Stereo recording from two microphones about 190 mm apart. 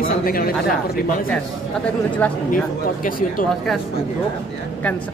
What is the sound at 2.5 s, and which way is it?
Speech, 45° left (ahead or behind).